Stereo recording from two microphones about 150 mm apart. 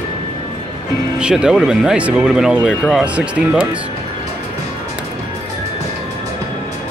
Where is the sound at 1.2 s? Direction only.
5° right (ahead or behind).